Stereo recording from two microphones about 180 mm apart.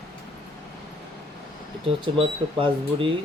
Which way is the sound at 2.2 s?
30° right (ahead or behind).